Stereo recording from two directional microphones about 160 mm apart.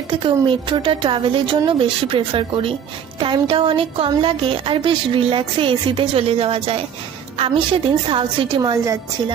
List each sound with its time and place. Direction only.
0.2 s a woman's voice: 30° right (ahead or behind)